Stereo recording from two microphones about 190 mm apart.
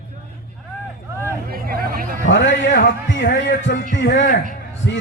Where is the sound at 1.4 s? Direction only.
50° right (ahead or behind).